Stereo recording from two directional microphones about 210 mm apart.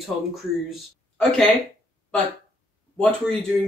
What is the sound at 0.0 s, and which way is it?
Speech, centre (ahead or behind).